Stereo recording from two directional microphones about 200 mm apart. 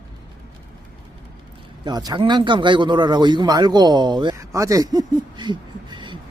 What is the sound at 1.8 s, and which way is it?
Speech, 20° right (ahead or behind).